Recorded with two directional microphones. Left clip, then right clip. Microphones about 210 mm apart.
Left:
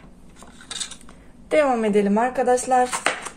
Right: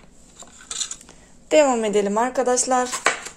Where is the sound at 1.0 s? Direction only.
30° right (ahead or behind).